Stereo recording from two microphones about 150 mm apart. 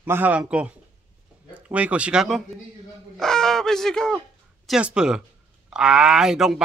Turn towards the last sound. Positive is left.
turn(degrees=-5)  # may be behind; listen again after turning